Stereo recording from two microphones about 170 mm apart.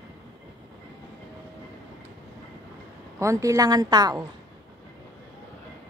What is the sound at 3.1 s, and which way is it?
Speech, 15° right (ahead or behind).